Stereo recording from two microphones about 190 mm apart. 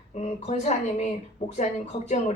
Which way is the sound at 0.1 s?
35° left (ahead or behind).